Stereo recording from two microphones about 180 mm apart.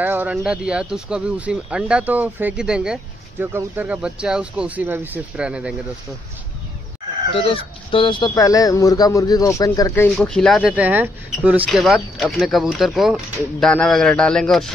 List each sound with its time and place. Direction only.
0.0 s speech: 10° right (ahead or behind)
7.3 s speech: 30° left (ahead or behind); by 10.0 s 15° left (ahead or behind)
10.1 s speech: 5° left (ahead or behind)